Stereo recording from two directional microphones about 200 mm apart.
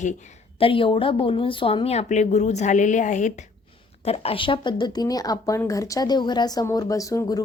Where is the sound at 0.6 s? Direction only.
25° left (ahead or behind).